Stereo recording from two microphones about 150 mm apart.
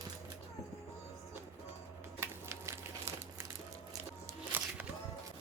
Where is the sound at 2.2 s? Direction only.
20° right (ahead or behind).